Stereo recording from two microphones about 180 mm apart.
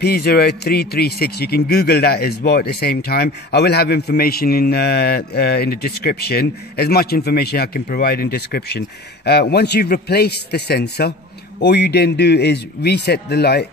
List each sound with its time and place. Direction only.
0.0 s speech: 60° left (ahead or behind)